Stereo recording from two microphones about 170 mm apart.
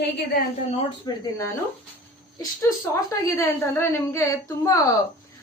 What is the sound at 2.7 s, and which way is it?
A woman's voice, 10° left (ahead or behind).